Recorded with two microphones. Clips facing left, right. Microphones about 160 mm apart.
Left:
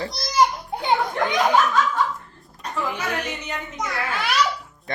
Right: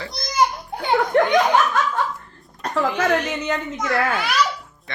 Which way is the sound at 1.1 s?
70° right (ahead or behind).